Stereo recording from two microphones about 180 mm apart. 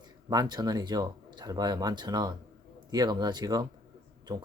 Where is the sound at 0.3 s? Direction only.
20° right (ahead or behind).